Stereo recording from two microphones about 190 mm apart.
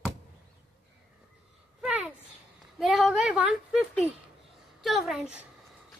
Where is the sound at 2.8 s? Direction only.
Centre (ahead or behind).